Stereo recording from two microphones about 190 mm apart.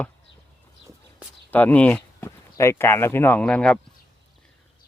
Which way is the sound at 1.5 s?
10° left (ahead or behind).